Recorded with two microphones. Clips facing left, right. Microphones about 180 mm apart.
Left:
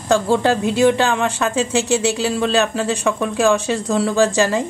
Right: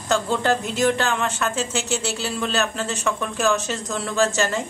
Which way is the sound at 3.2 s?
30° left (ahead or behind).